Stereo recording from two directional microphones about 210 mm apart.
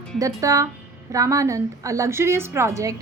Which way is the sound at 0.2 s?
15° right (ahead or behind).